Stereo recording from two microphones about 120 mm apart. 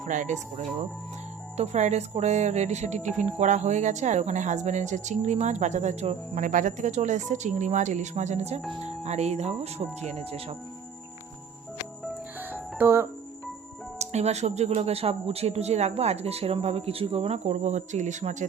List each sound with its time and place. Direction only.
0.0 s speech: 85° right
1.5 s speech: 65° right (ahead or behind)
12.4 s music: 15° right (ahead or behind)
14.0 s speech: 65° right (ahead or behind)